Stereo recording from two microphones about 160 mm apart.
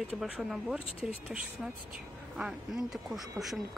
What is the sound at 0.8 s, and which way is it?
Speech, 35° left (ahead or behind).